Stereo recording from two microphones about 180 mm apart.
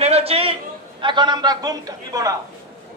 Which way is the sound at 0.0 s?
35° right (ahead or behind).